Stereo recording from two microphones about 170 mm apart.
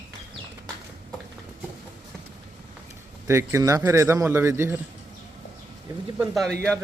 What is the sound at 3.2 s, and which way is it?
A man's voice, 15° right (ahead or behind).